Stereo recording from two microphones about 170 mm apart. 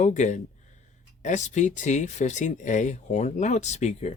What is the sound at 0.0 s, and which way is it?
Speech, 45° left (ahead or behind).